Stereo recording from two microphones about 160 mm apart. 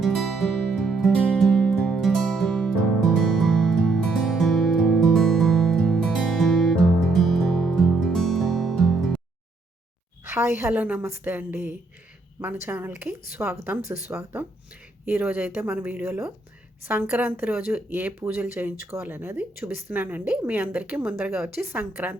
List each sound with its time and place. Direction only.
0.0 s music: centre (ahead or behind)
10.2 s speech: 15° right (ahead or behind)
14.1 s speech: 5° right (ahead or behind)
21.6 s speech: 15° right (ahead or behind)